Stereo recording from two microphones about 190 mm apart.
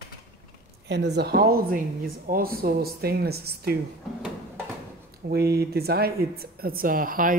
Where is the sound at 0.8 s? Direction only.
65° right (ahead or behind).